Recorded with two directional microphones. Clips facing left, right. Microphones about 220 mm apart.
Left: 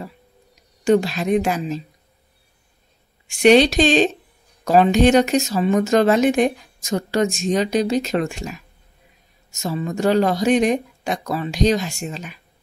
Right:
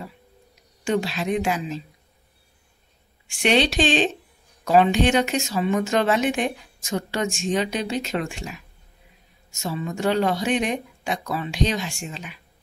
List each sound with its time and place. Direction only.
0.8 s a woman's voice: 45° left (ahead or behind)
3.4 s a woman's voice: 40° left (ahead or behind)